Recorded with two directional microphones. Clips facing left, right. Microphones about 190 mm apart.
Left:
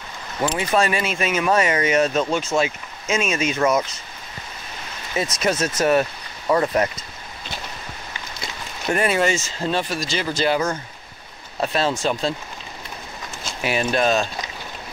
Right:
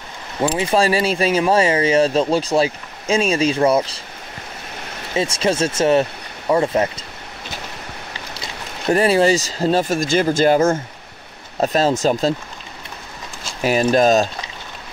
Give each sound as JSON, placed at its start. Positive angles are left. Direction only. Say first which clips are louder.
{"t": 0.4, "sound": "speech", "louder": "right 3 dB", "side_deg": -30}
{"t": 5.1, "sound": "speech", "louder": "right 3 dB", "side_deg": -30}
{"t": 8.8, "sound": "speech", "louder": "right 5 dB", "side_deg": -30}
{"t": 13.6, "sound": "speech", "louder": "right 6 dB", "side_deg": -40}